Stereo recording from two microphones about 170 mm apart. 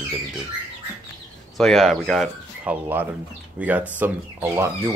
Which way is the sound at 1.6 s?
Centre (ahead or behind).